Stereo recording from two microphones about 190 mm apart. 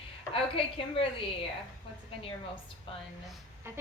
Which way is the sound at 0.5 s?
30° left (ahead or behind).